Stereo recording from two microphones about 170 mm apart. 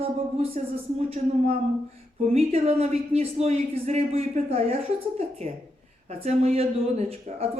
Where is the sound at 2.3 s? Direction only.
40° right (ahead or behind).